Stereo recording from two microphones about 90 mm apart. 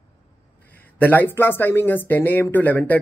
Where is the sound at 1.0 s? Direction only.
20° left (ahead or behind).